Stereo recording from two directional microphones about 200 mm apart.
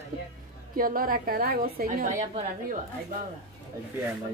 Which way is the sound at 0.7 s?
45° right (ahead or behind).